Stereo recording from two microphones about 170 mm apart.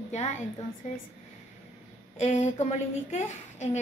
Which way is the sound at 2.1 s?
45° left (ahead or behind).